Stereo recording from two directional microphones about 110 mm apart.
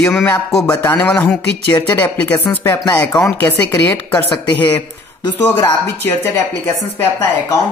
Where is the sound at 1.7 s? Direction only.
35° left (ahead or behind).